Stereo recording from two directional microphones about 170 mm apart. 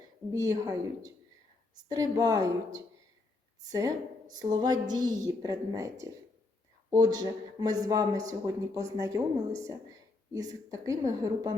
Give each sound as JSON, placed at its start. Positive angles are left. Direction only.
{"t": 0.3, "sound": "a woman's voice", "side_deg": -20}
{"t": 3.7, "sound": "a woman's voice", "side_deg": -20}
{"t": 10.3, "sound": "a woman's voice", "side_deg": -20}